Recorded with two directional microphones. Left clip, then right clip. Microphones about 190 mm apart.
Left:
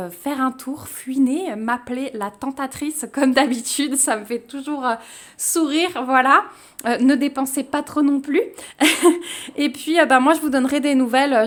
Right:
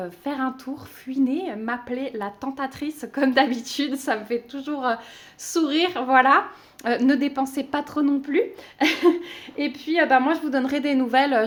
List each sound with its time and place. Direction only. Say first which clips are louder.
0.0 s a woman's voice: left 5 dB; 30° left (ahead or behind)